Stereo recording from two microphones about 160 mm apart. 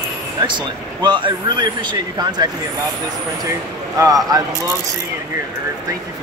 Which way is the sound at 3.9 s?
20° right (ahead or behind).